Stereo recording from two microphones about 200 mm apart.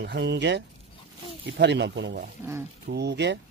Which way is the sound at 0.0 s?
60° right (ahead or behind).